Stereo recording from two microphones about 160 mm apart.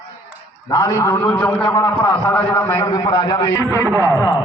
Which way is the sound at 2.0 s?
10° left (ahead or behind).